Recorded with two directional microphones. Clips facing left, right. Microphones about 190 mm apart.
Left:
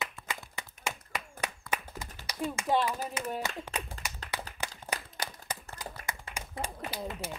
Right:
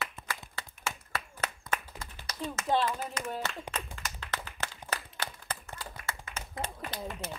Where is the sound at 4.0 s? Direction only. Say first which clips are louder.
Even; 35° left (ahead or behind).